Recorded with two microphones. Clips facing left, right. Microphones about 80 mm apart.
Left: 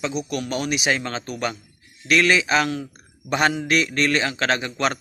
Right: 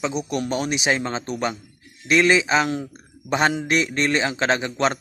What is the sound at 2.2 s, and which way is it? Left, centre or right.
Speech, right.